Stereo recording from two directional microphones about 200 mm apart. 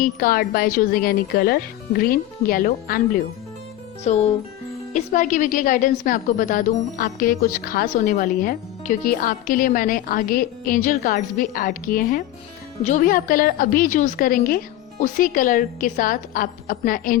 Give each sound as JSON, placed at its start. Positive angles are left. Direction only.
{"t": 0.0, "sound": "a woman's voice", "side_deg": 45}
{"t": 4.1, "sound": "a woman's voice", "side_deg": 35}